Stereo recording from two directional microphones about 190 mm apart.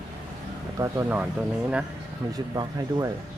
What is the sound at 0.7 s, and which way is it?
Speech, 15° right (ahead or behind).